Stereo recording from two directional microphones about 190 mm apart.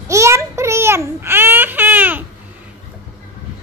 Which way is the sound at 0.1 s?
15° right (ahead or behind).